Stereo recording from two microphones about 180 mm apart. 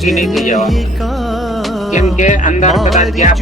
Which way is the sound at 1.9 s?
40° left (ahead or behind).